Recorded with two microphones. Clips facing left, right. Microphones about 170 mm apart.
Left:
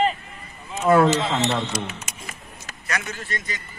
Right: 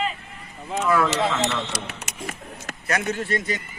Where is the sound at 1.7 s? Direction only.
70° right (ahead or behind).